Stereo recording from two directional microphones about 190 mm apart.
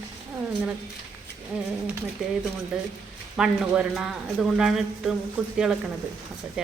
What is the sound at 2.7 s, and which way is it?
Speech, 5° right (ahead or behind).